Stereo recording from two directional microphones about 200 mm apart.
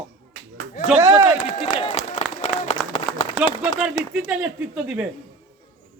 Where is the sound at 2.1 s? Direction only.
30° left (ahead or behind).